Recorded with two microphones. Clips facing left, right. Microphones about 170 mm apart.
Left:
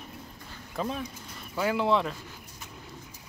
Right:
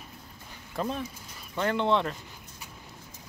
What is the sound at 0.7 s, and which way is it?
Speech, centre (ahead or behind).